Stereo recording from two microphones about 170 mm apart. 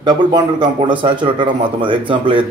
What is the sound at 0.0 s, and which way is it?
A man's voice, 25° right (ahead or behind).